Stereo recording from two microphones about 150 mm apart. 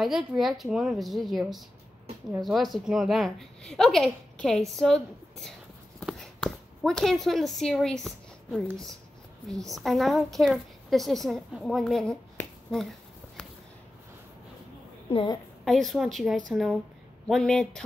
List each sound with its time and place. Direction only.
0.4 s a woman's voice: centre (ahead or behind)
15.0 s a woman's voice: 35° left (ahead or behind)
15.6 s a woman's voice: centre (ahead or behind)